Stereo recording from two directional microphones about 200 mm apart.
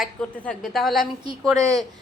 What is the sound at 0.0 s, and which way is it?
A woman's voice, 5° left (ahead or behind).